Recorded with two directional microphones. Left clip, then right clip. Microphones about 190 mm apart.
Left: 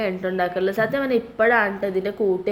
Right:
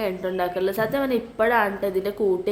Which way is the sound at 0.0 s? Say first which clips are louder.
Left 2 dB; 5° left (ahead or behind).